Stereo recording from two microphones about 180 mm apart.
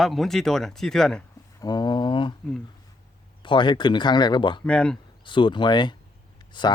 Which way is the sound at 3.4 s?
25° left (ahead or behind).